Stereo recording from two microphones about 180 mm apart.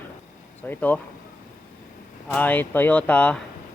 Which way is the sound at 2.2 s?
10° left (ahead or behind).